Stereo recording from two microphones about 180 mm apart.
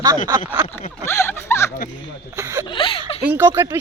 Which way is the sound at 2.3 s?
15° right (ahead or behind).